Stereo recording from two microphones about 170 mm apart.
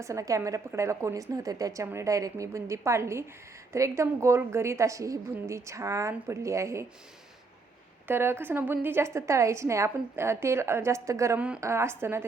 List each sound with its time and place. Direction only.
0.0 s a woman's voice: 20° right (ahead or behind)
8.0 s a woman's voice: 15° right (ahead or behind)